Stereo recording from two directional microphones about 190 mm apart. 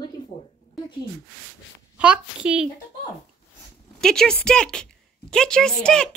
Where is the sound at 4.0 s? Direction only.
5° left (ahead or behind).